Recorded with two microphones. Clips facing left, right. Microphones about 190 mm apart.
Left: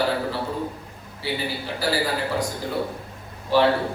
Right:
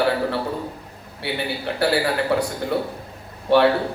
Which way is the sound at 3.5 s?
65° right (ahead or behind).